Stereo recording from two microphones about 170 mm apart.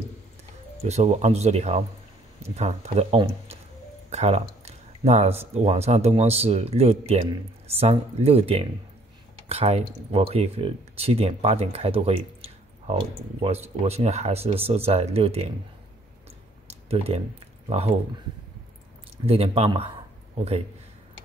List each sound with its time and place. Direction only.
0.8 s speech: 40° right (ahead or behind)
13.8 s speech: 40° right (ahead or behind)
16.9 s speech: 35° right (ahead or behind)
19.2 s speech: 35° right (ahead or behind)